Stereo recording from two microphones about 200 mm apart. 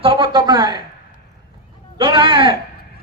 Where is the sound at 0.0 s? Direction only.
25° right (ahead or behind).